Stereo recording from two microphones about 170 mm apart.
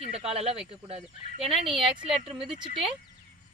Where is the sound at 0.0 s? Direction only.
35° right (ahead or behind).